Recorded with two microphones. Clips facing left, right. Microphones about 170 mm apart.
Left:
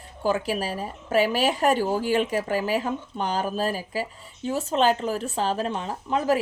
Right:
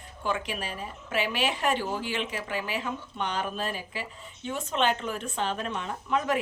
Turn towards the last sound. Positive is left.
turn(degrees=35)  # may be behind; listen again after turning